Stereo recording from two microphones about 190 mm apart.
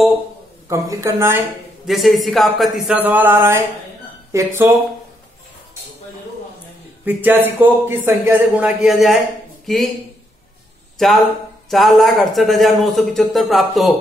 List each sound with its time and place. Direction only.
0.7 s a man's voice: 15° right (ahead or behind)
1.9 s a man's voice: centre (ahead or behind)
7.1 s a man's voice: 10° right (ahead or behind)
11.0 s speech: centre (ahead or behind)